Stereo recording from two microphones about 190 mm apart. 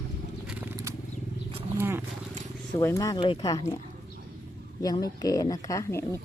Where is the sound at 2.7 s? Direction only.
15° left (ahead or behind).